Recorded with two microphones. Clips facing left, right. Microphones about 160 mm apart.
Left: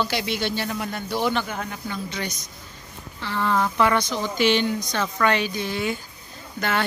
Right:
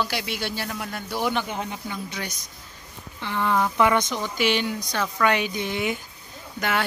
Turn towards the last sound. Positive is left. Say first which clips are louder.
# left 1 dB
turn(degrees=-10)  # may be behind; listen again after turning